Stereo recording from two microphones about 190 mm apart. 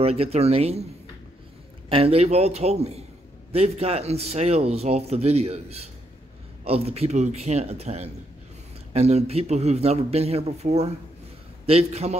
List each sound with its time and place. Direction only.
0.0 s a man's voice: 30° right (ahead or behind)
1.9 s a man's voice: 30° right (ahead or behind)